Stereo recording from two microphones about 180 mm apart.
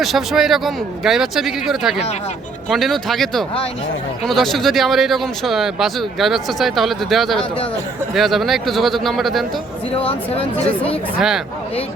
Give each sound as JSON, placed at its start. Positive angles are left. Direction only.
{"t": 0.0, "sound": "speech", "side_deg": 0}
{"t": 10.0, "sound": "speech", "side_deg": 35}